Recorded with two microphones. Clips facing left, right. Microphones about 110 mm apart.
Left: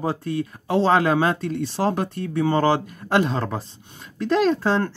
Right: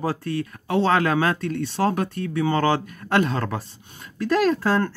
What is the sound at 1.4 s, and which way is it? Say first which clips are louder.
Speech: even; 55° right (ahead or behind).